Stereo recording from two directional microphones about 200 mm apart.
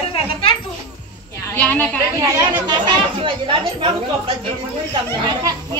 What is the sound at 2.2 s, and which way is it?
Speech, 15° right (ahead or behind).